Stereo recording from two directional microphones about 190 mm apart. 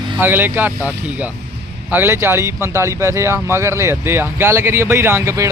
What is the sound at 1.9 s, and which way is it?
Speech, 10° right (ahead or behind).